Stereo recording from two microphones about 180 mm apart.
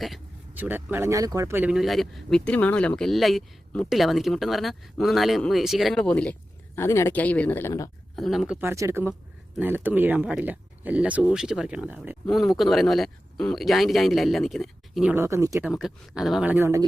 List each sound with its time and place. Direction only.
0.0 s speech: 5° right (ahead or behind); by 7.9 s 15° left (ahead or behind)
8.1 s speech: centre (ahead or behind)
8.6 s speech: 15° right (ahead or behind); by 15.1 s centre (ahead or behind)
15.1 s speech: 15° right (ahead or behind)
15.6 s speech: 5° right (ahead or behind)